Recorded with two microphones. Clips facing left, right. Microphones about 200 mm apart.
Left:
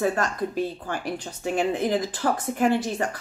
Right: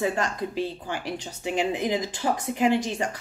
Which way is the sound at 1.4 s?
10° right (ahead or behind).